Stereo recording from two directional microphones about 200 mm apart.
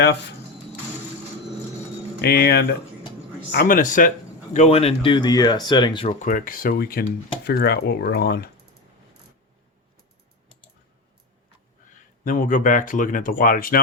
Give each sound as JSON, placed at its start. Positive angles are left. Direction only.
{"t": 2.2, "sound": "speech", "side_deg": 50}
{"t": 6.1, "sound": "speech", "side_deg": 40}
{"t": 12.2, "sound": "speech", "side_deg": 40}